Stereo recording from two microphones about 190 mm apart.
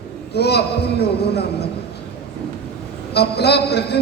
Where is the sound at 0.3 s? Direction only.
60° left (ahead or behind).